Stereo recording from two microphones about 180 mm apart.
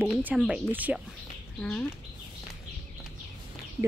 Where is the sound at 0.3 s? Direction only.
5° right (ahead or behind).